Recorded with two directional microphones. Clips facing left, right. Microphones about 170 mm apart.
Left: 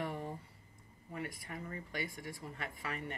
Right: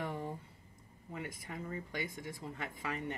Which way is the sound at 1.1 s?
20° right (ahead or behind).